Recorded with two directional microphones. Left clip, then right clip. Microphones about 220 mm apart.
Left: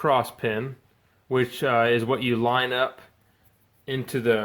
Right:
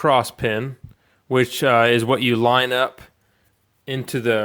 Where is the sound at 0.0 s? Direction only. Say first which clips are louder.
Right 5 dB; 35° right (ahead or behind).